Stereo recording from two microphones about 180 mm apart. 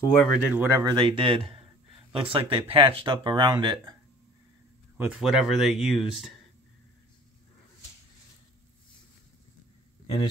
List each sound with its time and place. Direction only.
0.2 s speech: 10° right (ahead or behind)
0.8 s speech: 25° right (ahead or behind)
4.9 s speech: 5° right (ahead or behind)